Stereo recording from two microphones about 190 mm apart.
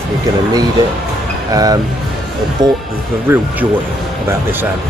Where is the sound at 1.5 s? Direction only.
20° right (ahead or behind).